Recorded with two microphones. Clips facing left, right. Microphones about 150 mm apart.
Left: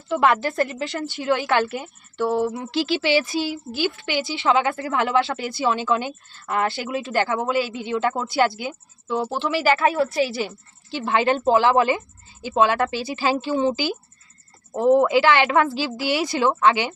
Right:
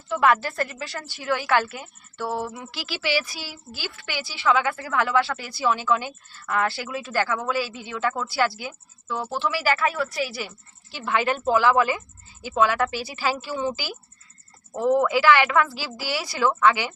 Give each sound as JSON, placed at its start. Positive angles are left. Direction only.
{"t": 0.1, "sound": "a woman's voice", "side_deg": 25}